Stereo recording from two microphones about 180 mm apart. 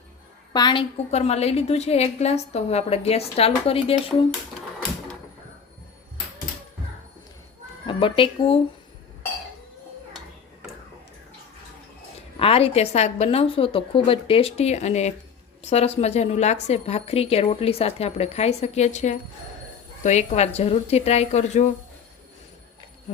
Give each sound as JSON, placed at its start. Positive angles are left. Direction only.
{"t": 0.5, "sound": "a woman's voice", "side_deg": 25}
{"t": 7.9, "sound": "speech", "side_deg": 30}
{"t": 12.4, "sound": "a woman's voice", "side_deg": 30}